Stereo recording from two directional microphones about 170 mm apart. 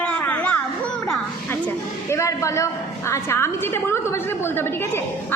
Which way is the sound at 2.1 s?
15° left (ahead or behind).